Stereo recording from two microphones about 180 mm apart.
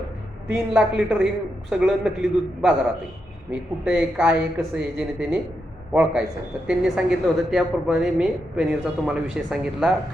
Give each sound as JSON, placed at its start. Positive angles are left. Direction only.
{"t": 0.4, "sound": "a woman's voice", "side_deg": -5}